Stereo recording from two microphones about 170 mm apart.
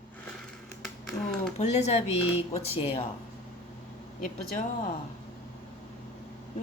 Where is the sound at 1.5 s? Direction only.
40° left (ahead or behind).